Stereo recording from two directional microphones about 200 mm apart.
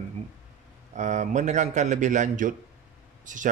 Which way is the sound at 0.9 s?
35° right (ahead or behind).